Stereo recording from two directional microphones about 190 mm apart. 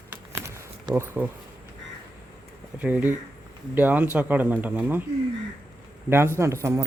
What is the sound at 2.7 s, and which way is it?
Speech, 10° right (ahead or behind).